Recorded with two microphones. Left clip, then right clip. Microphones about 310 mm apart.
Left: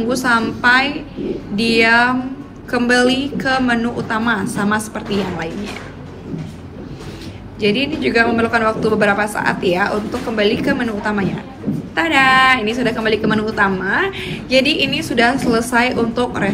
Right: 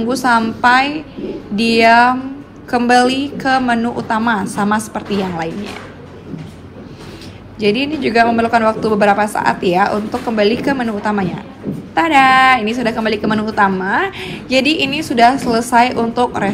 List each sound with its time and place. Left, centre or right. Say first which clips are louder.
0.0 s a woman's voice: right 2 dB; centre
7.6 s a woman's voice: right 1 dB; centre